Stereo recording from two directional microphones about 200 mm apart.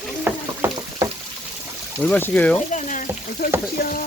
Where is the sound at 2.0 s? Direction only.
5° left (ahead or behind).